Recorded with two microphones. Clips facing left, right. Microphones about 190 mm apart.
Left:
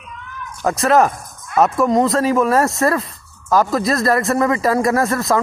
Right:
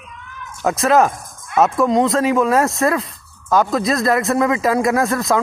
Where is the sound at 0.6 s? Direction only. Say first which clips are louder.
Even; centre (ahead or behind).